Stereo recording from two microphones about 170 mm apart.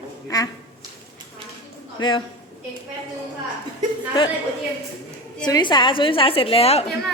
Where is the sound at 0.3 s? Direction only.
20° left (ahead or behind).